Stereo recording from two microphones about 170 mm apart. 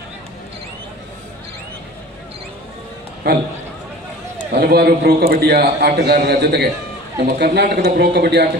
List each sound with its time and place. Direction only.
4.6 s a man's voice: 70° right (ahead or behind)
7.2 s a man's voice: 70° right (ahead or behind)